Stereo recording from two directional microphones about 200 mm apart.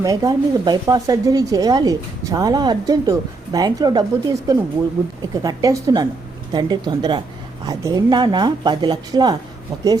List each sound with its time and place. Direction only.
0.0 s speech: 15° right (ahead or behind)